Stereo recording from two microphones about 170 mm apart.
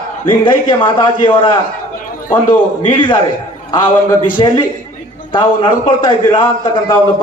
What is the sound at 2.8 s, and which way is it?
Speech, 30° left (ahead or behind).